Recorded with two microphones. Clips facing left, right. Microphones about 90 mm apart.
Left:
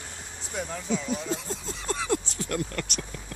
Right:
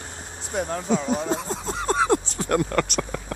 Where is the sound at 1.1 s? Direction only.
60° right (ahead or behind).